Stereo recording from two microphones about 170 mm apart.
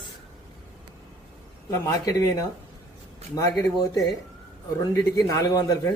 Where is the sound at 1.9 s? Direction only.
20° left (ahead or behind).